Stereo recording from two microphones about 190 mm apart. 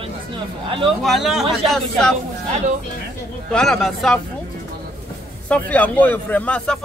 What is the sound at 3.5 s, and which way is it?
Speech, centre (ahead or behind).